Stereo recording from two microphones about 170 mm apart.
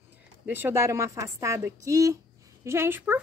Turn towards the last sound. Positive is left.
turn(degrees=-15)  # may be behind; listen again after turning